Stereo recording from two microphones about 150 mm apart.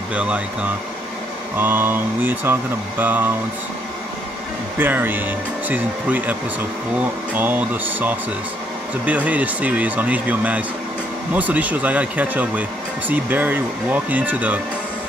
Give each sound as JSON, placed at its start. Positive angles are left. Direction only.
{"t": 0.1, "sound": "speech", "side_deg": -5}
{"t": 4.7, "sound": "speech", "side_deg": -15}
{"t": 7.3, "sound": "speech", "side_deg": -10}